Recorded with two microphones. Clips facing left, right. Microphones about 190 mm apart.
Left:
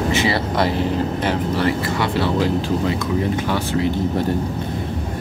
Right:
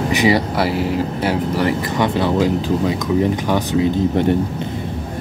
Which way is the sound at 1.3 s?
15° right (ahead or behind).